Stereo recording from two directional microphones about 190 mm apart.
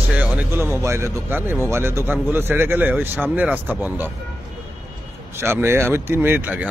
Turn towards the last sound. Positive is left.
turn(degrees=-10)  # may be behind; listen again after turning